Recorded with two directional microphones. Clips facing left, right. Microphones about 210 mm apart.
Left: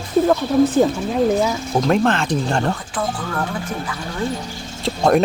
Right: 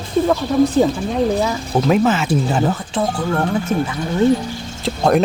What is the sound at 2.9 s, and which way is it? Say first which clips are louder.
Speech: right 5 dB; 25° right (ahead or behind).